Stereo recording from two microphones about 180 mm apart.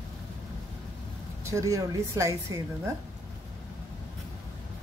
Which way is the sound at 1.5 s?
15° right (ahead or behind).